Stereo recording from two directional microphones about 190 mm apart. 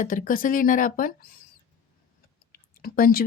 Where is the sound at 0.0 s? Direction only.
45° left (ahead or behind).